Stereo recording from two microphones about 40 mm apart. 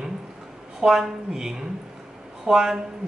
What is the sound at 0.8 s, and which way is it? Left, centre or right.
A woman's voice, right.